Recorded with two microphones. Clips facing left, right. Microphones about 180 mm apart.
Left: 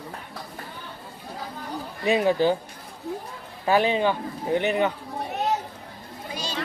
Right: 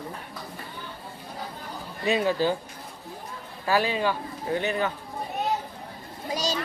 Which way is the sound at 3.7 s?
20° left (ahead or behind).